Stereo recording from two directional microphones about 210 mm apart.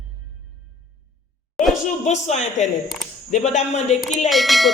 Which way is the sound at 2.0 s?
35° left (ahead or behind).